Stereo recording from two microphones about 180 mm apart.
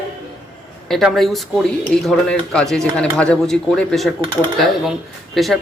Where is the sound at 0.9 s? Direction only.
Centre (ahead or behind).